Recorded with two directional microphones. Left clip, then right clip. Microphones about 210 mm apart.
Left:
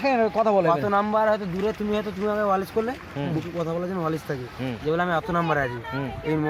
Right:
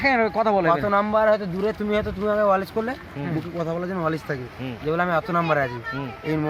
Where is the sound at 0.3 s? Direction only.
25° left (ahead or behind).